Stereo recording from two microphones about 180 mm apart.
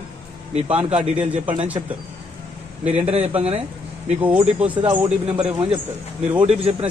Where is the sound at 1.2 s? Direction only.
30° right (ahead or behind).